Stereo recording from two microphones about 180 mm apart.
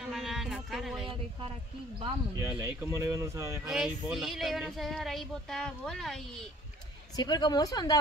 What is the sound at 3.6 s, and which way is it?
Speech, centre (ahead or behind).